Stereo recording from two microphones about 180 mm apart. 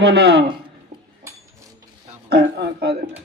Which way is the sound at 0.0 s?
65° right (ahead or behind).